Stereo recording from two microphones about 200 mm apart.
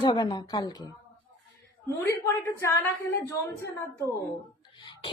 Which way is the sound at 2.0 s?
15° left (ahead or behind).